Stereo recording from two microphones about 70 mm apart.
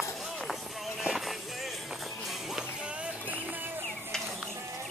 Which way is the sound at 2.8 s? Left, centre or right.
Centre.